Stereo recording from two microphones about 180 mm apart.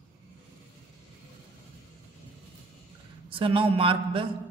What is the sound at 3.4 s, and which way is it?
Speech, 30° right (ahead or behind).